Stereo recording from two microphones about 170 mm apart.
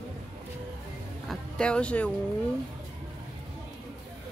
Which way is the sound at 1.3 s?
5° left (ahead or behind).